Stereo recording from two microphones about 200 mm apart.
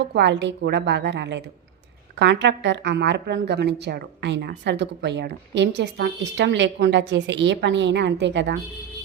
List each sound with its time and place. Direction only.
0.0 s a woman's voice: 55° right (ahead or behind)